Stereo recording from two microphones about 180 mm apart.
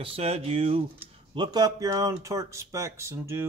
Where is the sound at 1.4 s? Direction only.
20° right (ahead or behind).